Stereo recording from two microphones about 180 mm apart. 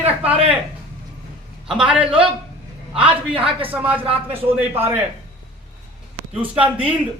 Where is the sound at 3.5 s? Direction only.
30° right (ahead or behind).